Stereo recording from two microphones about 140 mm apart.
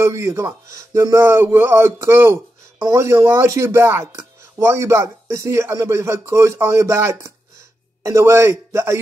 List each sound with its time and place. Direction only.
0.0 s a man's voice: 20° right (ahead or behind)